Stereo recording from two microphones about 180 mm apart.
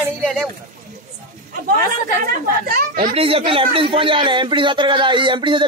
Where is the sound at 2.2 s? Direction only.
50° right (ahead or behind).